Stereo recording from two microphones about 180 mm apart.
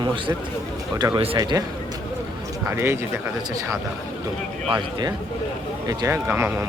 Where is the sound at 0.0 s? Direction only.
25° right (ahead or behind).